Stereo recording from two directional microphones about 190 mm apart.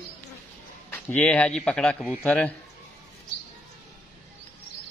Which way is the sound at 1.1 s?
5° left (ahead or behind).